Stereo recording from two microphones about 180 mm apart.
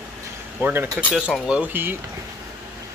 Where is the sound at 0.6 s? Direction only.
10° right (ahead or behind).